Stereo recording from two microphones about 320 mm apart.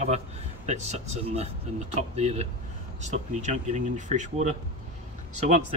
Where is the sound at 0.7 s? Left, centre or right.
Right.